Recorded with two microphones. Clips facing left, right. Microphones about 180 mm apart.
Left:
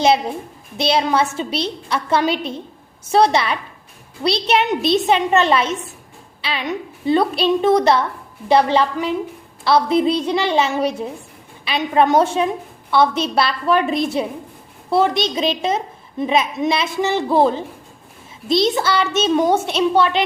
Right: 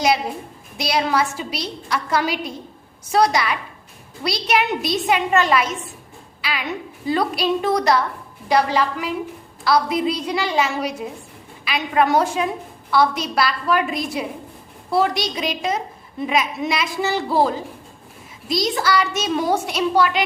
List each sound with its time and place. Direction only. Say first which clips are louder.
0.8 s a woman's voice: left 3 dB; 25° left (ahead or behind)